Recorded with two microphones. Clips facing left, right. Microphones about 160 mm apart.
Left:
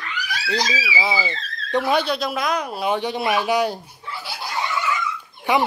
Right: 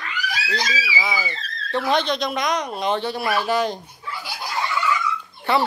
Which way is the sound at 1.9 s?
10° left (ahead or behind).